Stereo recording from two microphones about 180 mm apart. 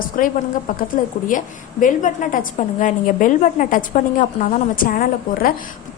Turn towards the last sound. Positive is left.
turn(degrees=50)  # may be behind; listen again after turning